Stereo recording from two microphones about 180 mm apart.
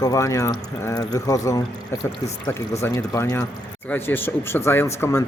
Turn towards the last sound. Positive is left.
turn(degrees=15)  # may be behind; listen again after turning